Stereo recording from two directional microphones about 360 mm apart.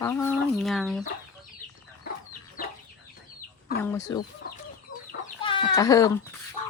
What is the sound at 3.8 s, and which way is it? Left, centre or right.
Chicken, centre.